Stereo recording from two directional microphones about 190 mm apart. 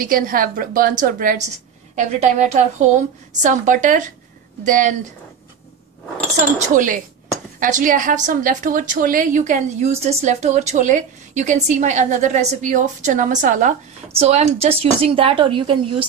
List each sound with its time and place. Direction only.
0.0 s a woman's voice: 45° right (ahead or behind)
6.7 s a woman's voice: 45° right (ahead or behind); by 16.1 s 25° right (ahead or behind)